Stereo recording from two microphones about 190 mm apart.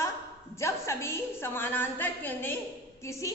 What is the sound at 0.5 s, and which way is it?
A woman's voice, 15° left (ahead or behind).